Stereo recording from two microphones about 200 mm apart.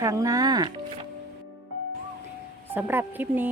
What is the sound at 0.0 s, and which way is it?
Speech, 15° right (ahead or behind).